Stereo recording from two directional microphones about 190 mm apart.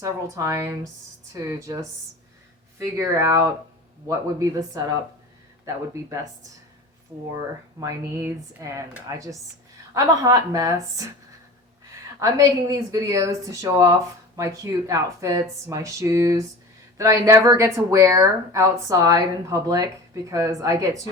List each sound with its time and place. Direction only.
0.0 s speech: 15° right (ahead or behind)